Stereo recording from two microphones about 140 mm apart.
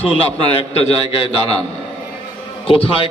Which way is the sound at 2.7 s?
40° left (ahead or behind).